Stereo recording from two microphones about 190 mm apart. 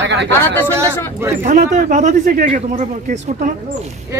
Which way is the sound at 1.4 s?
40° right (ahead or behind).